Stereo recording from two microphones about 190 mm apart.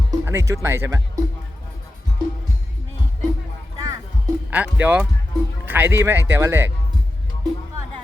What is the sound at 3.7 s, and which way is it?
Music, 20° right (ahead or behind).